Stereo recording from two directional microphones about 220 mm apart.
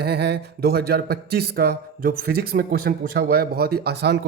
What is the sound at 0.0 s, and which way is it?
Speech, 45° right (ahead or behind).